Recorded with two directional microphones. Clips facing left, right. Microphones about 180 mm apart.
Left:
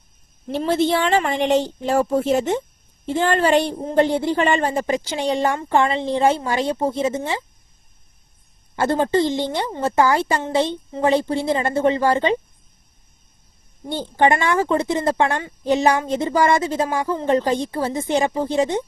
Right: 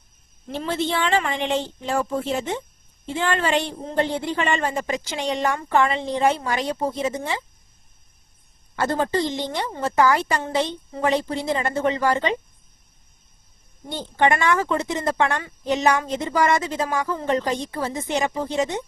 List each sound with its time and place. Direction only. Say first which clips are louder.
0.4 s a woman's voice: left 6 dB; 35° left (ahead or behind)
8.7 s a woman's voice: left 4 dB; 25° left (ahead or behind)
13.9 s a woman's voice: left 3 dB; 30° left (ahead or behind)